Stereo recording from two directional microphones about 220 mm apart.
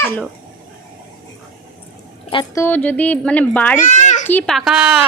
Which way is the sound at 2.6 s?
5° left (ahead or behind).